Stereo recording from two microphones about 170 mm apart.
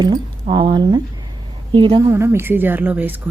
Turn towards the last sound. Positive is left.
turn(degrees=-10)  # may be behind; listen again after turning